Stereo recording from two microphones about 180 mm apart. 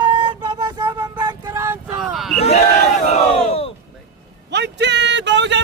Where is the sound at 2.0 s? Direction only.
Centre (ahead or behind).